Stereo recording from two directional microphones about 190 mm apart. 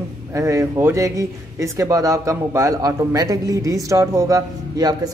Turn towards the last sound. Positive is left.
turn(degrees=-20)  # may be behind; listen again after turning